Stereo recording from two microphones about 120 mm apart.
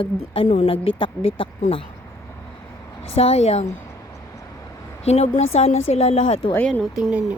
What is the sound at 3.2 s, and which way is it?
Speech, 60° left (ahead or behind).